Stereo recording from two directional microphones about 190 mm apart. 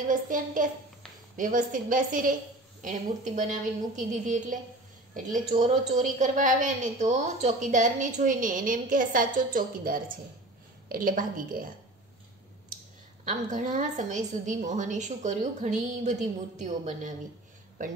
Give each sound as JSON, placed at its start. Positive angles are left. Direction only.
{"t": 0.1, "sound": "a woman's voice", "side_deg": -45}
{"t": 13.3, "sound": "a woman's voice", "side_deg": -40}